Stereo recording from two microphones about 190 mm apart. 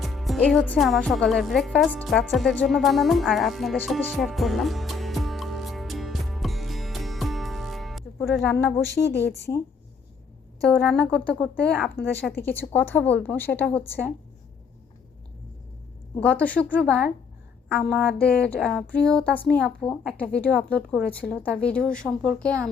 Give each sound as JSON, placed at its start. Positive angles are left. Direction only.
{"t": 0.0, "sound": "music", "side_deg": 0}
{"t": 10.6, "sound": "a woman's voice", "side_deg": 0}
{"t": 16.2, "sound": "a woman's voice", "side_deg": 5}